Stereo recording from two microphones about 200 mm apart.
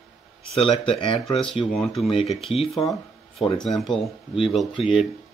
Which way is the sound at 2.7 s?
Centre (ahead or behind).